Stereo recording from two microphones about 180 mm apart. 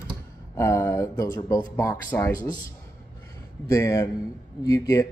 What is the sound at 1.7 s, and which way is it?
Speech, 10° left (ahead or behind).